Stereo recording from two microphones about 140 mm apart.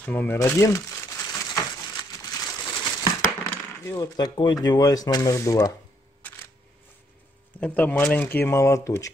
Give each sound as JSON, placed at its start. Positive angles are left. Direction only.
{"t": 0.0, "sound": "crumpling", "side_deg": 10}
{"t": 3.4, "sound": "coin", "side_deg": 20}
{"t": 7.6, "sound": "speech", "side_deg": 10}